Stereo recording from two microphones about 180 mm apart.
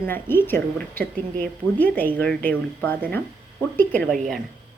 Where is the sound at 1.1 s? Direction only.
50° right (ahead or behind).